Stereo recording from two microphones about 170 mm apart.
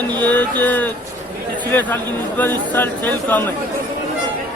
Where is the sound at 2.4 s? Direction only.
10° left (ahead or behind).